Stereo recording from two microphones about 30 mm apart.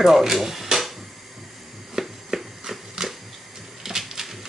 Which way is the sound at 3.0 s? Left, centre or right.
Right.